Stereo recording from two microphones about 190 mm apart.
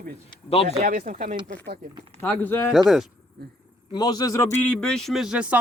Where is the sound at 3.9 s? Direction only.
20° left (ahead or behind).